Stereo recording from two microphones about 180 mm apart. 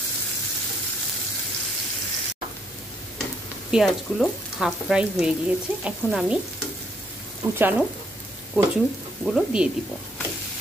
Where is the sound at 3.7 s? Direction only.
Centre (ahead or behind).